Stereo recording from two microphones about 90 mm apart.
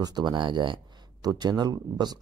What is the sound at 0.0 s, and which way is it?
Speech, 55° right (ahead or behind).